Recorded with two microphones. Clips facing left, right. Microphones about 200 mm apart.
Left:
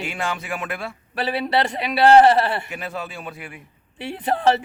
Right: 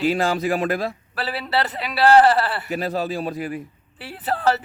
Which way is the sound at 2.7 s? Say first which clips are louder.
Right 7 dB; 35° right (ahead or behind).